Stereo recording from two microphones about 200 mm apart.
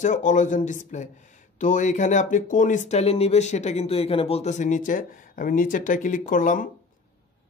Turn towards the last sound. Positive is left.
turn(degrees=40)  # may be behind; listen again after turning